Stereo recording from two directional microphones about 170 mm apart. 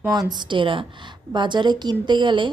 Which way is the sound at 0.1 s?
25° right (ahead or behind).